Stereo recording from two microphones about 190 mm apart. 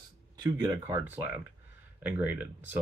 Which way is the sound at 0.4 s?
20° right (ahead or behind).